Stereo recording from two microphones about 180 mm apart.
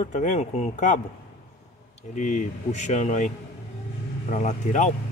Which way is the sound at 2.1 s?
45° left (ahead or behind).